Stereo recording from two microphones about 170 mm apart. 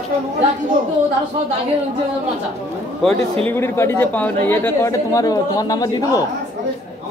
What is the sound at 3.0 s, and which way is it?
Speech, centre (ahead or behind).